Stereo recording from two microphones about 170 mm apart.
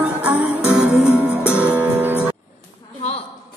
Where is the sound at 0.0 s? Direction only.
10° right (ahead or behind).